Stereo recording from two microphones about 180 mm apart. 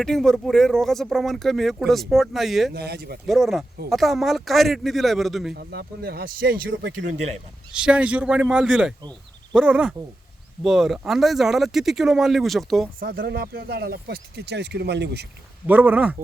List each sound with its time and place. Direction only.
0.0 s speech: 5° left (ahead or behind)
2.7 s speech: 65° right (ahead or behind)
3.2 s speech: centre (ahead or behind)
5.5 s speech: 60° right (ahead or behind)
7.7 s speech: 5° right (ahead or behind)
13.1 s speech: 65° right (ahead or behind)
15.6 s speech: 10° right (ahead or behind)